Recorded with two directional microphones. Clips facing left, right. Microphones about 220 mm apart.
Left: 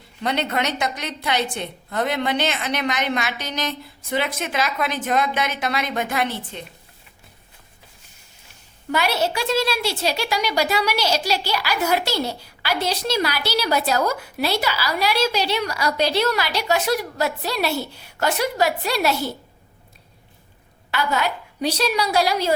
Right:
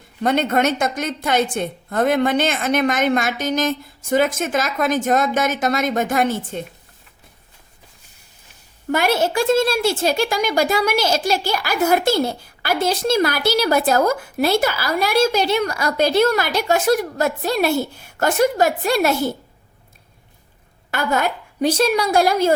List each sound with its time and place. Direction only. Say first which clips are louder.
0.2 s a woman's voice: right 6 dB; 50° right (ahead or behind)
8.9 s a woman's voice: right 4 dB; 50° right (ahead or behind)
20.9 s a woman's voice: right 3 dB; 50° right (ahead or behind)